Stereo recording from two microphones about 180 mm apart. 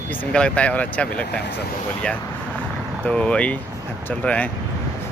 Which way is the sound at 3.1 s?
5° left (ahead or behind).